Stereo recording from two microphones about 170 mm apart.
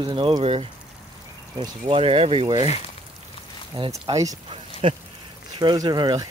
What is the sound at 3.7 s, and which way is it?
Speech, 30° right (ahead or behind).